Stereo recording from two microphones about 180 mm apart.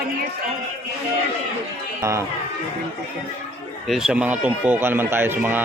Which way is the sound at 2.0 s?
15° right (ahead or behind).